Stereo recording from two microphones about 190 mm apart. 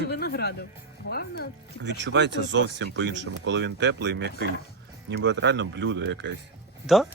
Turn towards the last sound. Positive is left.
turn(degrees=0)  # may be behind; listen again after turning